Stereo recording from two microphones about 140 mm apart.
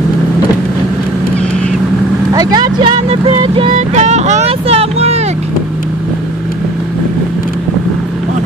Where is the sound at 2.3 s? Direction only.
30° right (ahead or behind).